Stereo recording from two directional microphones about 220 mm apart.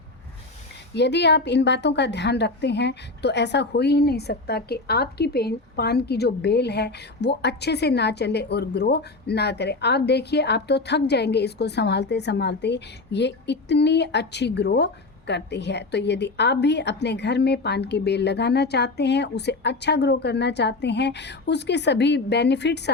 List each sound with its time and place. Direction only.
0.9 s a woman's voice: 50° left (ahead or behind)